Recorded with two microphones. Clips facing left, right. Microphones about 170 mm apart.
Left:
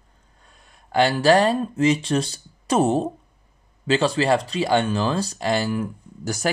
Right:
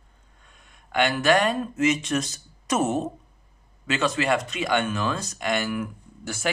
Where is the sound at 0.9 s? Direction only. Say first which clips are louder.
Left 4 dB; 35° left (ahead or behind).